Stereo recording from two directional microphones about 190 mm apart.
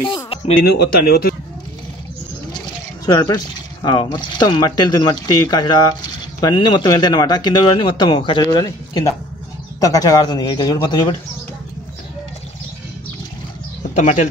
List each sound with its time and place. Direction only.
0.0 s a sound: 30° left (ahead or behind)
0.7 s speech: 55° left (ahead or behind)
3.1 s speech: 20° left (ahead or behind)
13.9 s speech: 40° left (ahead or behind)